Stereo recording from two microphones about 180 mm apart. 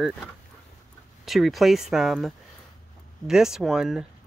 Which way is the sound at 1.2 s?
Centre (ahead or behind).